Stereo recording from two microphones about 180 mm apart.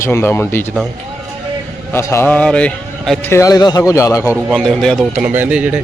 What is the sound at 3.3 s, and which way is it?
Speech, 15° left (ahead or behind).